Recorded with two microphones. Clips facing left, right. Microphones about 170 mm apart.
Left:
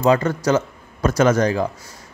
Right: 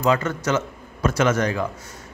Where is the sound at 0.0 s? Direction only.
35° left (ahead or behind).